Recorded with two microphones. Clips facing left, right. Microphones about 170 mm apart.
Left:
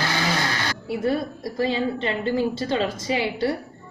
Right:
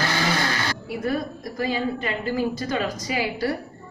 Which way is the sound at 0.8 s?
25° left (ahead or behind).